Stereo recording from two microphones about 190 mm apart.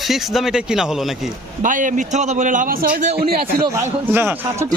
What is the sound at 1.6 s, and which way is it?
A man's voice, 45° right (ahead or behind).